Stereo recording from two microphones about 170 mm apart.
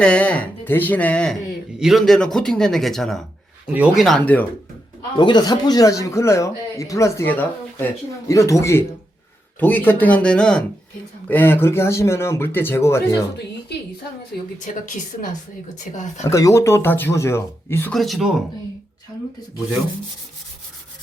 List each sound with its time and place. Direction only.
0.0 s speech: 5° left (ahead or behind)
5.1 s speech: 25° left (ahead or behind)
15.8 s speech: 45° left (ahead or behind)
16.2 s speech: 20° left (ahead or behind)
17.9 s speech: centre (ahead or behind)